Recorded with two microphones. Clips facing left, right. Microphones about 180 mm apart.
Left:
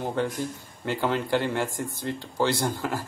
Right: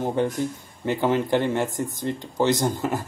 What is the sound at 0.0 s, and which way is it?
Speech, 15° right (ahead or behind).